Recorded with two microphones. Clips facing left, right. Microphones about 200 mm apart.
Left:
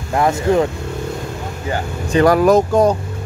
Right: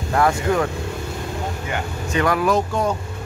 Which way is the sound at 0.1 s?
20° left (ahead or behind).